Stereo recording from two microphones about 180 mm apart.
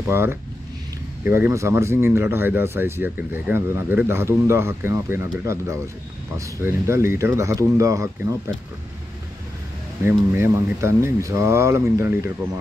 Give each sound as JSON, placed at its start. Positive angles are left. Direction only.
{"t": 0.0, "sound": "speech", "side_deg": -15}
{"t": 10.0, "sound": "speech", "side_deg": -15}